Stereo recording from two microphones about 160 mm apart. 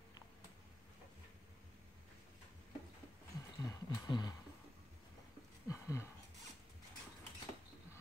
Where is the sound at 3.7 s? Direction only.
25° left (ahead or behind).